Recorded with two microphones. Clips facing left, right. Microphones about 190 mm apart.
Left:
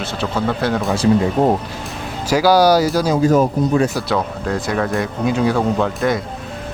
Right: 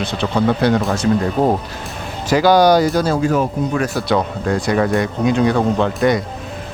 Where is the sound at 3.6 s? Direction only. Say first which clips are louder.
Left 2 dB; 40° left (ahead or behind).